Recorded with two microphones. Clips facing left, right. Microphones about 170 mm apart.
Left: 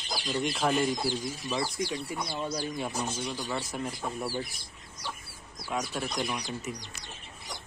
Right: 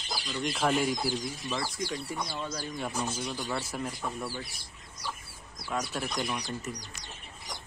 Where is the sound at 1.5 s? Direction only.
15° left (ahead or behind).